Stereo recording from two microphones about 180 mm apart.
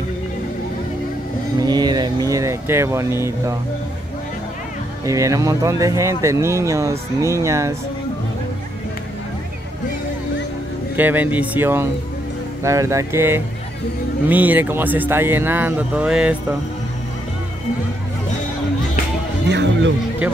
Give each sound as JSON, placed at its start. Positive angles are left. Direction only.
{"t": 1.6, "sound": "speech", "side_deg": -20}
{"t": 5.0, "sound": "speech", "side_deg": -20}
{"t": 11.0, "sound": "speech", "side_deg": -10}
{"t": 19.5, "sound": "speech", "side_deg": -80}